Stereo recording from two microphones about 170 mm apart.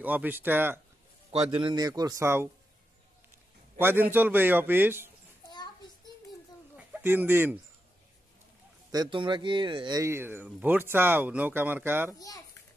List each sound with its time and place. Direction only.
0.0 s speech: 10° right (ahead or behind)
1.3 s a man's voice: 35° right (ahead or behind); by 2.5 s 15° right (ahead or behind)
3.7 s speech: 10° right (ahead or behind)
6.9 s speech: 10° right (ahead or behind)
8.9 s speech: 25° right (ahead or behind)
12.2 s a child's voice: 20° left (ahead or behind)